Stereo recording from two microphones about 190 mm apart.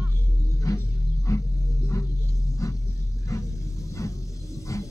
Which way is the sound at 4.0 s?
15° left (ahead or behind).